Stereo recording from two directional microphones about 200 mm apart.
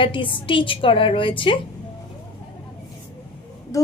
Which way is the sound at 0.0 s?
25° left (ahead or behind).